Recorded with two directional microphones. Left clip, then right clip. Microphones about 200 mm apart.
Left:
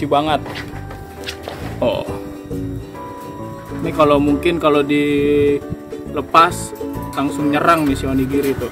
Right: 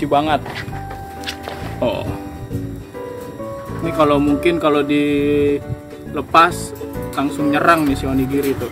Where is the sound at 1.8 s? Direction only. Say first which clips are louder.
Left 2 dB; 5° left (ahead or behind).